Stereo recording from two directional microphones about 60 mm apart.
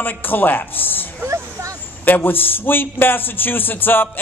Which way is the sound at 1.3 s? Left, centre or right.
Right.